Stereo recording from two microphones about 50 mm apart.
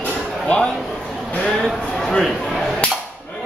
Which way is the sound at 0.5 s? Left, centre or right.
Left.